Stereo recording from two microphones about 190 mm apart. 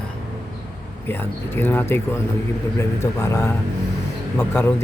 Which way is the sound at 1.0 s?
10° left (ahead or behind).